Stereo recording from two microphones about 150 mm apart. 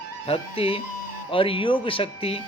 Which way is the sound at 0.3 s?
40° left (ahead or behind).